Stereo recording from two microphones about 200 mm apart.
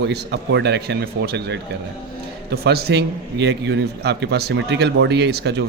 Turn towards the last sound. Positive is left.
turn(degrees=-55)  # may be behind; listen again after turning